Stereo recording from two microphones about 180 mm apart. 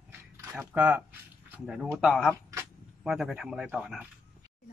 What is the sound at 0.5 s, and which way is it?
Speech, 10° right (ahead or behind).